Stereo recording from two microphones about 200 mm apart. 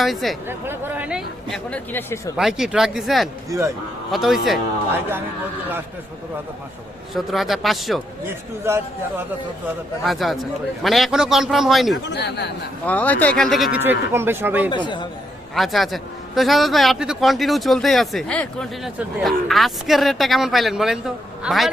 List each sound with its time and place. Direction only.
0.0 s a man's voice: centre (ahead or behind)
2.3 s a man's voice: 5° right (ahead or behind)
7.1 s a man's voice: centre (ahead or behind)
8.6 s a man's voice: 10° right (ahead or behind)
10.0 s a man's voice: centre (ahead or behind)
12.0 s a man's voice: 60° left (ahead or behind)
12.8 s a man's voice: 10° left (ahead or behind); by 14.7 s 10° right (ahead or behind)
14.7 s speech: 25° left (ahead or behind)
15.5 s a man's voice: centre (ahead or behind)